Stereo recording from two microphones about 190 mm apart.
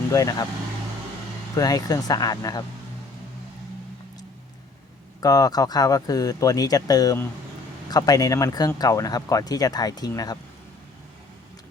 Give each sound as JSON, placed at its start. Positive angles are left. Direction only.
{"t": 0.1, "sound": "speech", "side_deg": 20}
{"t": 1.5, "sound": "speech", "side_deg": 20}
{"t": 5.2, "sound": "speech", "side_deg": 20}